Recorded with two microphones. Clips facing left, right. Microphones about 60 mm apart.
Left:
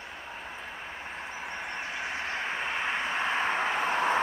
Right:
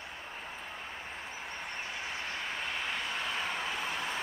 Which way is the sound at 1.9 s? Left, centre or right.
Left.